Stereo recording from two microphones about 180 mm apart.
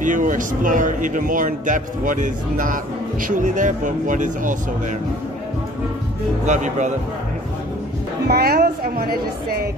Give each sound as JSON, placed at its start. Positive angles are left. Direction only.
{"t": 0.0, "sound": "a man's voice", "side_deg": -45}
{"t": 6.4, "sound": "speech", "side_deg": -40}
{"t": 8.3, "sound": "a woman's voice", "side_deg": -60}